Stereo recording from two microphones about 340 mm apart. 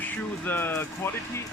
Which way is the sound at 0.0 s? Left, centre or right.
Centre.